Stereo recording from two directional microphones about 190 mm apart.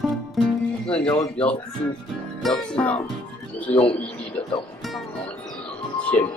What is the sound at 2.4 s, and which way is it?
Speech, centre (ahead or behind).